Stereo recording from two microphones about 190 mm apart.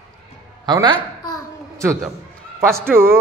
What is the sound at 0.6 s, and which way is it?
Speech, 20° right (ahead or behind).